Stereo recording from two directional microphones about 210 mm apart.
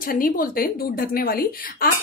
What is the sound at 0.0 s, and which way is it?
A woman's voice, 45° left (ahead or behind).